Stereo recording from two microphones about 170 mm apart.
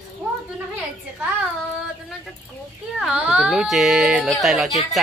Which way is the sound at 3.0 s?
5° right (ahead or behind).